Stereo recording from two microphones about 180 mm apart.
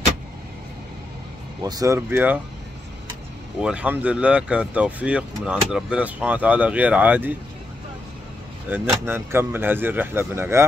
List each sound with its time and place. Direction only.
1.6 s speech: 20° right (ahead or behind)
3.6 s speech: 5° right (ahead or behind)
8.6 s speech: 10° right (ahead or behind)